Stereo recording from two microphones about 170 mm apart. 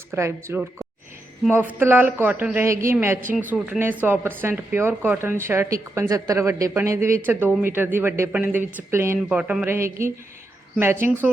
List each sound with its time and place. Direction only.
0.1 s speech: 15° right (ahead or behind)